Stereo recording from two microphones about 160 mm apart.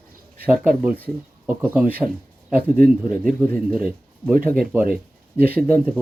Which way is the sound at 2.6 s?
70° right (ahead or behind).